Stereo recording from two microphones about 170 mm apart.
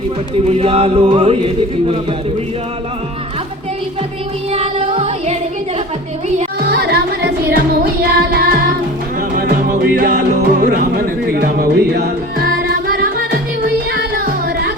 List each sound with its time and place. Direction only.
0.4 s music: 35° right (ahead or behind)
4.5 s music: 35° right (ahead or behind)
6.7 s music: 75° right (ahead or behind)